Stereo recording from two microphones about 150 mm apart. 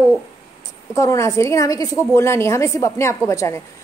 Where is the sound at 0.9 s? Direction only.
20° left (ahead or behind).